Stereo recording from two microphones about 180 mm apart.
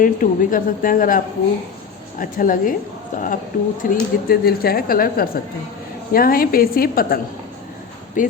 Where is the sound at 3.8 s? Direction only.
50° left (ahead or behind).